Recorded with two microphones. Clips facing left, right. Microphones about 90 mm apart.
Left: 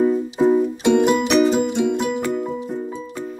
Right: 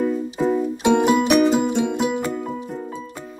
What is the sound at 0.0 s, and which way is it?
Music, 20° left (ahead or behind).